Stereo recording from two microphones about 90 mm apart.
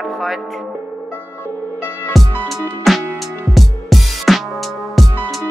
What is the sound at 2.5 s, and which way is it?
Music, centre (ahead or behind).